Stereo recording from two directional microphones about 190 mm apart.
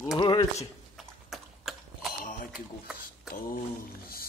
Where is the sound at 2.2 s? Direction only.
45° left (ahead or behind).